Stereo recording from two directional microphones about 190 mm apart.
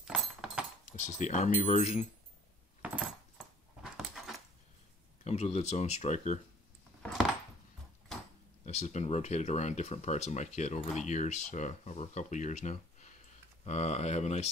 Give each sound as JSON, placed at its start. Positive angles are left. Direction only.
{"t": 0.0, "sound": "a sound", "side_deg": -5}
{"t": 0.9, "sound": "speech", "side_deg": 40}
{"t": 3.8, "sound": "dog", "side_deg": 0}
{"t": 5.2, "sound": "speech", "side_deg": 35}
{"t": 8.6, "sound": "speech", "side_deg": 35}